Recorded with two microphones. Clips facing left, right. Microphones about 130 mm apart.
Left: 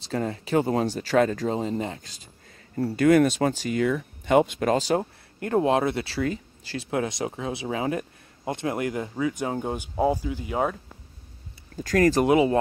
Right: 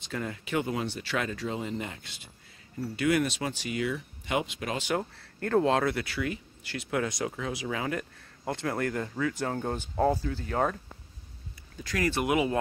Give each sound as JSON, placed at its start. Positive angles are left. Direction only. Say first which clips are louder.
{"t": 0.0, "sound": "speech", "louder": "left 7 dB", "side_deg": 35}
{"t": 5.4, "sound": "speech", "louder": "left 3 dB", "side_deg": 15}
{"t": 6.1, "sound": "speech", "louder": "left 5 dB", "side_deg": 35}
{"t": 11.7, "sound": "speech", "louder": "left 9 dB", "side_deg": 45}